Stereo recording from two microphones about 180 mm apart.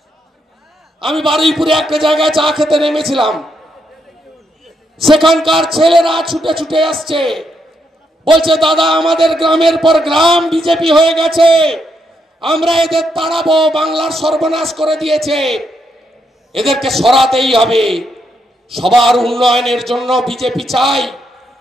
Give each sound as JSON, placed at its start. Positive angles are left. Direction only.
{"t": 1.3, "sound": "a man's voice", "side_deg": 0}
{"t": 4.6, "sound": "a sound", "side_deg": 0}
{"t": 5.2, "sound": "a man's voice", "side_deg": 0}
{"t": 11.4, "sound": "a man's voice", "side_deg": -30}
{"t": 12.4, "sound": "a man's voice", "side_deg": 0}